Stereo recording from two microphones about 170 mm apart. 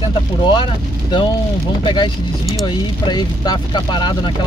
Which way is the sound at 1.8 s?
25° left (ahead or behind).